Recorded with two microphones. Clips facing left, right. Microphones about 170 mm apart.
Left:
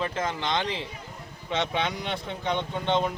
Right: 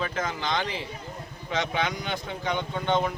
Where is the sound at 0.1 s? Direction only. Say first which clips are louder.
Left 1 dB; 30° left (ahead or behind).